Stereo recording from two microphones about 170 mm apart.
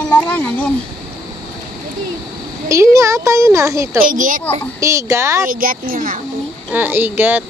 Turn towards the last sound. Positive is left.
turn(degrees=-10)  # may be behind; listen again after turning